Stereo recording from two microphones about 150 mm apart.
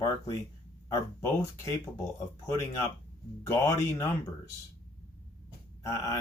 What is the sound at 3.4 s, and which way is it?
Speech, 20° left (ahead or behind).